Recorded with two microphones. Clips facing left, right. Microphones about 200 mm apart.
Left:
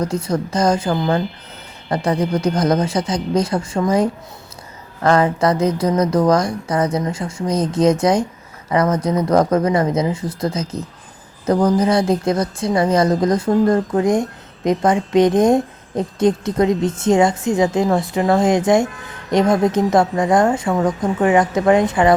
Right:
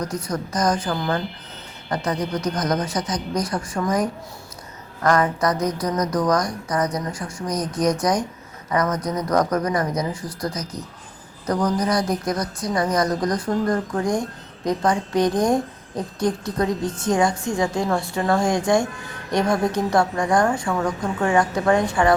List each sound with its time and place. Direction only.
0.0 s a woman's voice: 25° left (ahead or behind)